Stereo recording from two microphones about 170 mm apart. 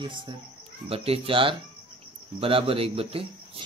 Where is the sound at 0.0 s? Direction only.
30° right (ahead or behind).